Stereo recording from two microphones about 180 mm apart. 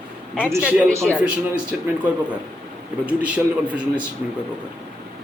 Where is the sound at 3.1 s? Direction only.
5° right (ahead or behind).